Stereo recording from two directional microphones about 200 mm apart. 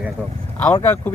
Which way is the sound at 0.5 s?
10° left (ahead or behind).